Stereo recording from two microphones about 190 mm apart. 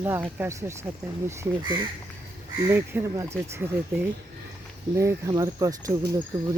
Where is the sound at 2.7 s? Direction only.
15° right (ahead or behind).